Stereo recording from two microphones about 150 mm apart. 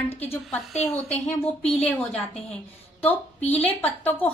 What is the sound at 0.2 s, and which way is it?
Speech, 10° left (ahead or behind).